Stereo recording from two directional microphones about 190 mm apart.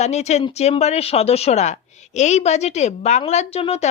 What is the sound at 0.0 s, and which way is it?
A woman's voice, 35° left (ahead or behind).